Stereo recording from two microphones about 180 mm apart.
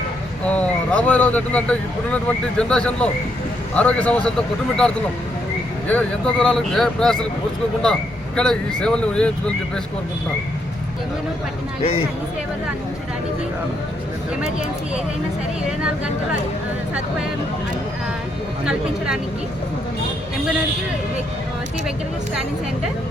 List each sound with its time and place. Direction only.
0.4 s speech: 5° left (ahead or behind)
5.9 s speech: 5° left (ahead or behind)
8.4 s speech: 5° left (ahead or behind)
11.8 s speech: 30° left (ahead or behind)
18.6 s speech: 5° right (ahead or behind)